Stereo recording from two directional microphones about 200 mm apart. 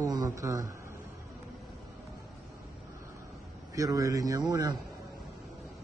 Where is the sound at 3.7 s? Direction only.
15° right (ahead or behind).